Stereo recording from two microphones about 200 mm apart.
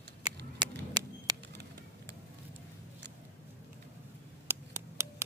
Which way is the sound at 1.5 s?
60° right (ahead or behind).